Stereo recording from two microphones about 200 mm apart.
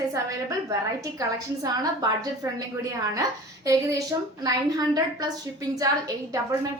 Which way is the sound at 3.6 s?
15° right (ahead or behind).